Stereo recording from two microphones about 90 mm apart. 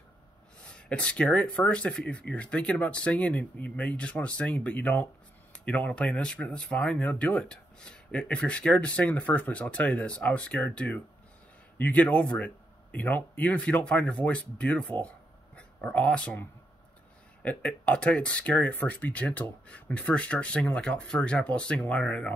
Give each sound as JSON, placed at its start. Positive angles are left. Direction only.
{"t": 0.6, "sound": "speech", "side_deg": 10}
{"t": 17.4, "sound": "speech", "side_deg": 15}